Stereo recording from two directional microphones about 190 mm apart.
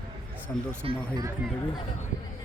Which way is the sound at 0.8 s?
30° right (ahead or behind).